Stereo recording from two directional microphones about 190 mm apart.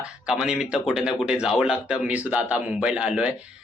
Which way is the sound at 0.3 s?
5° right (ahead or behind).